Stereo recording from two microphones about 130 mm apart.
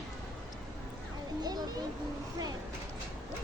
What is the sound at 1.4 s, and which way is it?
Speech, 30° right (ahead or behind).